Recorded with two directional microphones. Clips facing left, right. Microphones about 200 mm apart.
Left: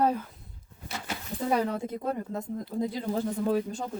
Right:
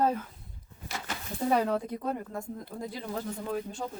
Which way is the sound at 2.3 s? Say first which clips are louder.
Left 4 dB; 20° left (ahead or behind).